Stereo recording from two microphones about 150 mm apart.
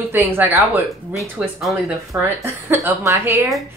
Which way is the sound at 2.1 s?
15° right (ahead or behind).